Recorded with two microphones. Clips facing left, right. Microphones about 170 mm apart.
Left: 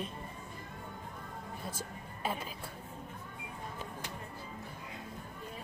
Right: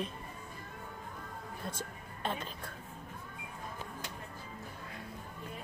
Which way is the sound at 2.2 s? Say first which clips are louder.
Even; 5° left (ahead or behind).